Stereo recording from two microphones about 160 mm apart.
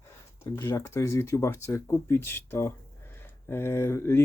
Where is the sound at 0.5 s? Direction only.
20° left (ahead or behind).